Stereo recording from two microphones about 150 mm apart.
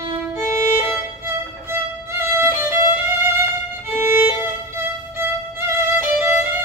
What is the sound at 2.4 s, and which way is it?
Violin, 15° right (ahead or behind).